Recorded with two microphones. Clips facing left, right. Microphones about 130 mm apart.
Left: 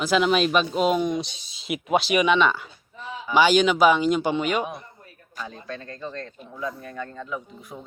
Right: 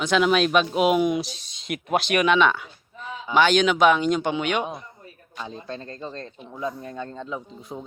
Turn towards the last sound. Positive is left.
turn(degrees=-25)  # may be behind; listen again after turning